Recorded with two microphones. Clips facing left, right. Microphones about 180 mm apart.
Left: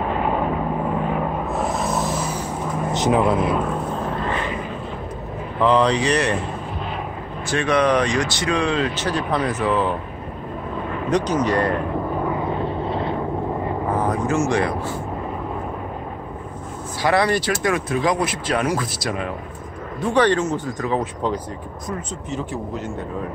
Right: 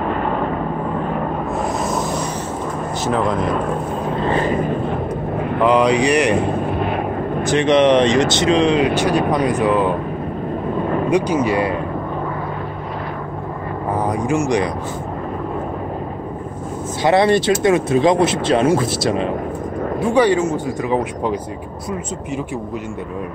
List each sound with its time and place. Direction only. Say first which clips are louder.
1.9 s vehicle: right 2 dB; centre (ahead or behind)
3.0 s speech: left 1 dB; 10° left (ahead or behind)
4.3 s vehicle: right 8 dB; 40° right (ahead or behind)
5.6 s speech: right 3 dB; 10° right (ahead or behind)
7.4 s speech: right 5 dB; 20° right (ahead or behind)
11.1 s speech: right 1 dB; 10° right (ahead or behind)
13.9 s speech: right 3 dB; 15° right (ahead or behind)
17.0 s speech: right 5 dB; 25° right (ahead or behind)
20.0 s speech: right 3 dB; 10° right (ahead or behind)